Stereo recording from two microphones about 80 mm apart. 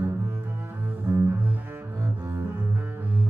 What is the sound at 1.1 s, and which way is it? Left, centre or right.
Double bass, right.